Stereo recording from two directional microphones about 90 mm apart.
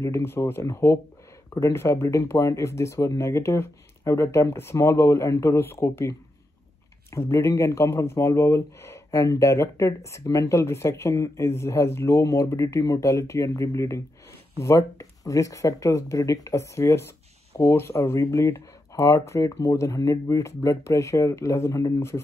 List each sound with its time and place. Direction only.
0.0 s speech: 30° left (ahead or behind)